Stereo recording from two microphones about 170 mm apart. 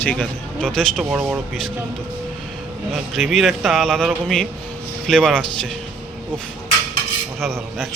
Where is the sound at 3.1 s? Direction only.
Centre (ahead or behind).